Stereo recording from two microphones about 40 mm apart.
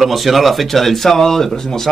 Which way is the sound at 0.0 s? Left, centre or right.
Centre.